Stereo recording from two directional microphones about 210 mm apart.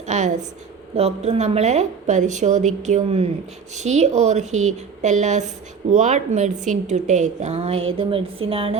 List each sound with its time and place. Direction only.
0.1 s a woman's voice: 35° right (ahead or behind)